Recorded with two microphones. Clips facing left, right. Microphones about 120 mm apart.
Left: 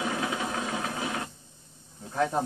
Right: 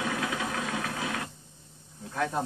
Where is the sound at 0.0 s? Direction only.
25° left (ahead or behind).